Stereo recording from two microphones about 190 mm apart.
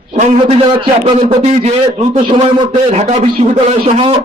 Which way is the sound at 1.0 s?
30° right (ahead or behind).